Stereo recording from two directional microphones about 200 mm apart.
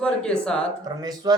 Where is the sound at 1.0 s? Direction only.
20° right (ahead or behind).